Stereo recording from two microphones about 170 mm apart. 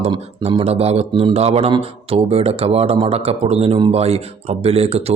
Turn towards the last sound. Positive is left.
turn(degrees=-35)  # may be behind; listen again after turning